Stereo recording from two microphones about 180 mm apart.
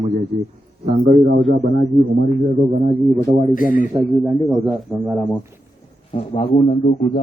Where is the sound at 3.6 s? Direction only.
50° left (ahead or behind).